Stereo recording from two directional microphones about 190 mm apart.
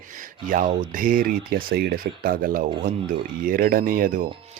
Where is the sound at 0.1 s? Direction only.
45° right (ahead or behind).